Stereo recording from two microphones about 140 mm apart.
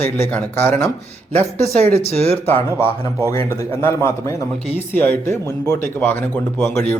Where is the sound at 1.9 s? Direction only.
50° left (ahead or behind).